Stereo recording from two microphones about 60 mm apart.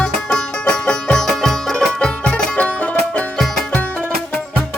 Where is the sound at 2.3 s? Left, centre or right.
Left.